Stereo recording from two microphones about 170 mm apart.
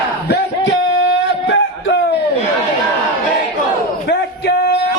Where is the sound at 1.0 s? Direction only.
90° left.